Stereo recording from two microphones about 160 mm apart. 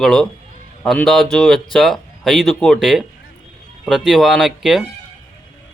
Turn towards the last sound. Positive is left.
turn(degrees=-5)  # may be behind; listen again after turning